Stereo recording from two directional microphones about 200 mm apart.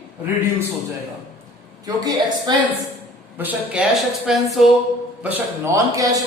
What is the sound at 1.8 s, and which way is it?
Speech, 20° right (ahead or behind).